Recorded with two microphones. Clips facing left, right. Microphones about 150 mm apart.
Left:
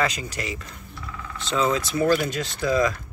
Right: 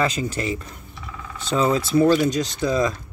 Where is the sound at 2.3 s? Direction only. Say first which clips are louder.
Right 2 dB; 15° right (ahead or behind).